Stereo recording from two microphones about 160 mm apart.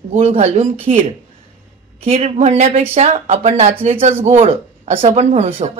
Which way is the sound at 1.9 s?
35° right (ahead or behind).